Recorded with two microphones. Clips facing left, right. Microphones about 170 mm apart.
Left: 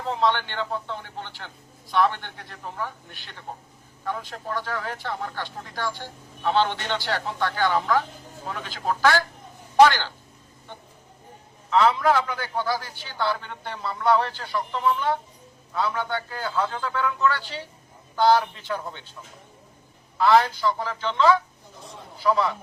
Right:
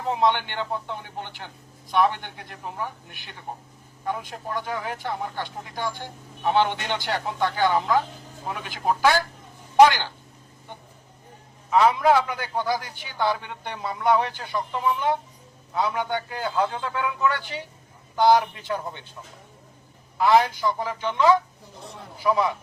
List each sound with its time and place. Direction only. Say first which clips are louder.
0.0 s speech: right 1 dB; 15° right (ahead or behind)
11.7 s speech: right 1 dB; 15° right (ahead or behind)
20.1 s speech: even; 15° right (ahead or behind)